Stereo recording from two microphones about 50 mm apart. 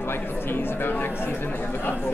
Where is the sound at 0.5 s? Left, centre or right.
Left.